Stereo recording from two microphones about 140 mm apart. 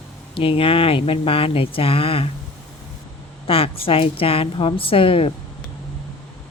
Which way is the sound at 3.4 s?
40° left (ahead or behind).